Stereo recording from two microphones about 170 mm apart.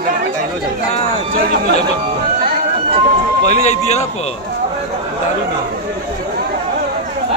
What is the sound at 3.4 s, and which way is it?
Speech, 45° left (ahead or behind).